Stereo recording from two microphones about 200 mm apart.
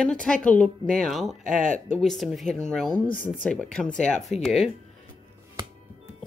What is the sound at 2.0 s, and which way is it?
Speech, centre (ahead or behind).